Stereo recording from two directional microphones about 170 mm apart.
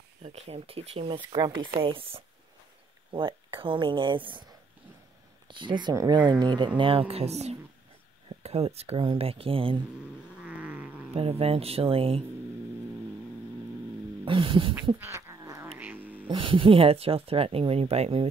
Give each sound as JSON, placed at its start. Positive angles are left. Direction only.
{"t": 0.2, "sound": "speech", "side_deg": -40}
{"t": 10.4, "sound": "cat", "side_deg": -10}
{"t": 11.1, "sound": "speech", "side_deg": -35}
{"t": 14.2, "sound": "speech", "side_deg": -30}
{"t": 15.0, "sound": "a sound", "side_deg": -15}
{"t": 16.3, "sound": "speech", "side_deg": -30}